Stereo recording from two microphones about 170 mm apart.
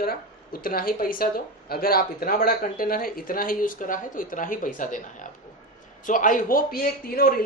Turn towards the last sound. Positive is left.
turn(degrees=60)  # may be behind; listen again after turning